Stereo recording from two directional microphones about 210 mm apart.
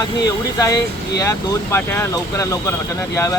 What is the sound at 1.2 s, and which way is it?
Speech, 15° left (ahead or behind).